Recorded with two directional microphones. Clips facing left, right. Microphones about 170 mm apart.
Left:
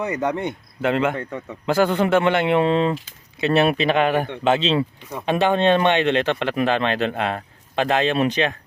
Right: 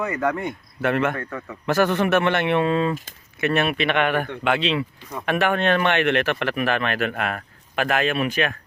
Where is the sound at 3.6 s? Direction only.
35° left (ahead or behind).